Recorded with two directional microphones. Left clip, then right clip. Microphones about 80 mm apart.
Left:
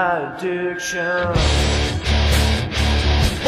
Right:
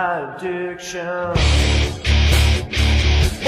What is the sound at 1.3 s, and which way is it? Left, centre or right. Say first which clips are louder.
Music: even; centre.